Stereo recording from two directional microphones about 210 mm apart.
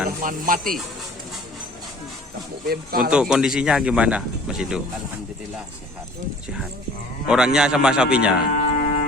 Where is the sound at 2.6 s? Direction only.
45° right (ahead or behind).